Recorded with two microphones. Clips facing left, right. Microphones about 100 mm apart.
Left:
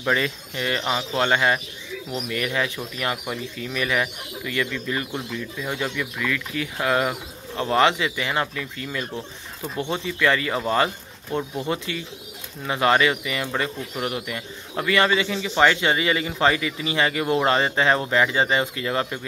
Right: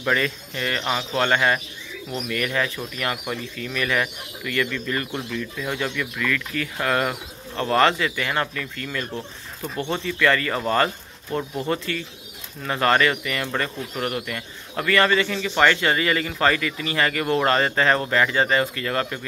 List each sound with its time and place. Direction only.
0.0 s speech: 15° left (ahead or behind)